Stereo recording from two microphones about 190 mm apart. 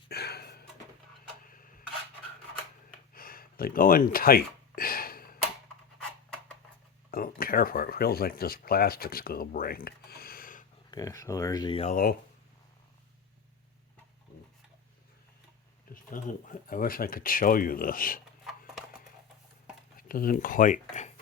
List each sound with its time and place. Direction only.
0.1 s a sound: 55° left (ahead or behind)
3.2 s a sound: 50° left (ahead or behind)
7.1 s speech: 50° left (ahead or behind)
10.9 s speech: 15° left (ahead or behind)
11.9 s speech: 50° left (ahead or behind)
15.9 s speech: 45° left (ahead or behind)
18.4 s horse: centre (ahead or behind)
20.0 s speech: 50° left (ahead or behind)